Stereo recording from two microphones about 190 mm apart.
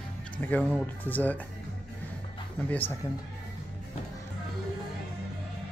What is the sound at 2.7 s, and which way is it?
Speech, 10° left (ahead or behind).